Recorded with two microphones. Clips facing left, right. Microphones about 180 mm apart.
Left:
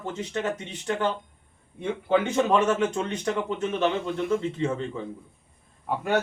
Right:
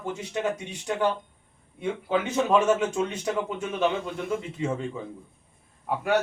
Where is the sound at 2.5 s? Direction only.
10° right (ahead or behind).